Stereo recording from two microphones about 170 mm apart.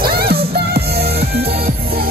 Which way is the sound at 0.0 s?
65° right (ahead or behind).